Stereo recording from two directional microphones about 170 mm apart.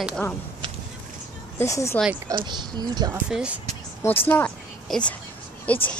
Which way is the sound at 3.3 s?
5° right (ahead or behind).